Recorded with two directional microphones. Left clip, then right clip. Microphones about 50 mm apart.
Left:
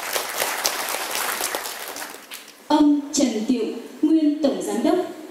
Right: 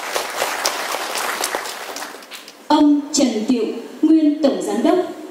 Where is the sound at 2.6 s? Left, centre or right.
Right.